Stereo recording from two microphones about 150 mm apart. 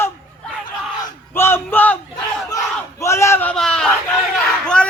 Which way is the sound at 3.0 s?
20° left (ahead or behind).